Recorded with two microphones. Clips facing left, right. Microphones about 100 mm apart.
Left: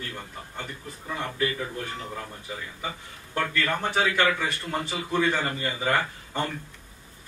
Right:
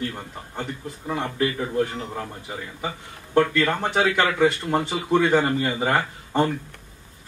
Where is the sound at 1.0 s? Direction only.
35° right (ahead or behind).